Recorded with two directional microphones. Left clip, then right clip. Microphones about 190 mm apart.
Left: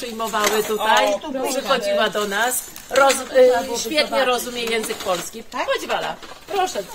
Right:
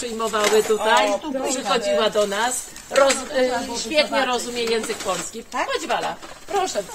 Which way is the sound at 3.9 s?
60° left (ahead or behind).